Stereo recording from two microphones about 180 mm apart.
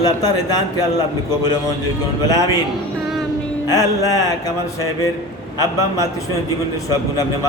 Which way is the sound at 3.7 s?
20° left (ahead or behind).